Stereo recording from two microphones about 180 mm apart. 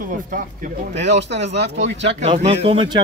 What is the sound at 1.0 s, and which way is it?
Speech, 75° right (ahead or behind).